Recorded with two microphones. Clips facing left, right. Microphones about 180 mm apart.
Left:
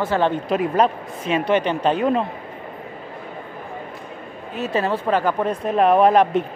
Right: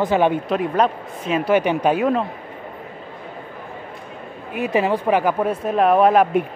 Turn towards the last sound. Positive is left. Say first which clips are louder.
# even
turn(degrees=-5)  # may be behind; listen again after turning